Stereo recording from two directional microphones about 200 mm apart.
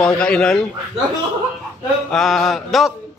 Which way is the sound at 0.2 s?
5° left (ahead or behind).